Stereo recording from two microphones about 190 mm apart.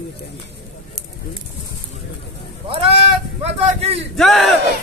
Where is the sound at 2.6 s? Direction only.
30° right (ahead or behind).